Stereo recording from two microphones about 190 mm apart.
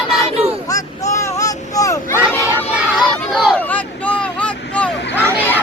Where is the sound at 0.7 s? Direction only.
15° left (ahead or behind).